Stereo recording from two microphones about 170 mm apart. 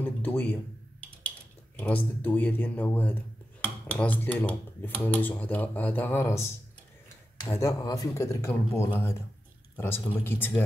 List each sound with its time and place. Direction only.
0.0 s a sound: 10° left (ahead or behind)
1.8 s speech: 10° left (ahead or behind)
7.6 s speech: 20° left (ahead or behind)